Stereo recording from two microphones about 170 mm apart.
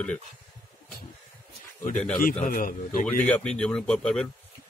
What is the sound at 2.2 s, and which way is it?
Speech, 55° left (ahead or behind).